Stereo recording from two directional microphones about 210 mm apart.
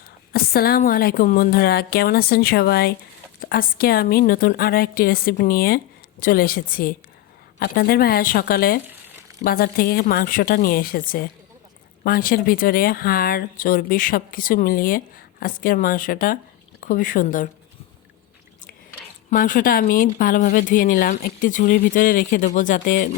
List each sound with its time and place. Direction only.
0.3 s speech: 45° left (ahead or behind)
19.3 s speech: 40° left (ahead or behind)